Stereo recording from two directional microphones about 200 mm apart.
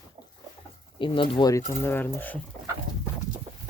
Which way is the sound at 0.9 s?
25° left (ahead or behind).